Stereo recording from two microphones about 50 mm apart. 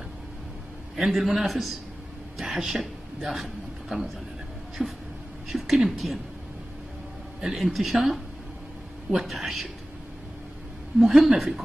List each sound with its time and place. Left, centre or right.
0.9 s a woman's voice: centre
4.8 s a sound: centre
5.5 s a woman's voice: centre
7.3 s a woman's voice: centre
11.1 s a woman's voice: centre